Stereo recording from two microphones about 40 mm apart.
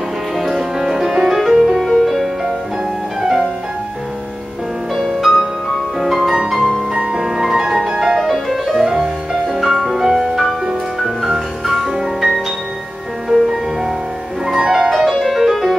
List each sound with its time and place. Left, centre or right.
0.4 s music: centre
1.9 s music: centre
2.1 s music: centre
5.0 s music: centre
8.2 s music: centre
9.5 s music: centre